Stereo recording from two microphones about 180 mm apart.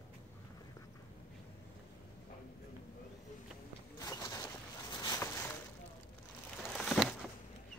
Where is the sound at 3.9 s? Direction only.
20° left (ahead or behind).